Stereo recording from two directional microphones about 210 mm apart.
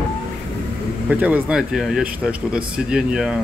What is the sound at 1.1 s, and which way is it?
Speech, 5° right (ahead or behind).